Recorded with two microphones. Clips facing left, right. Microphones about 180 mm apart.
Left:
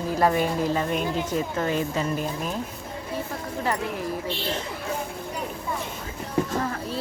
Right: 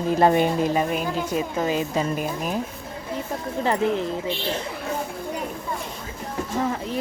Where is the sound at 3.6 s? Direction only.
25° right (ahead or behind).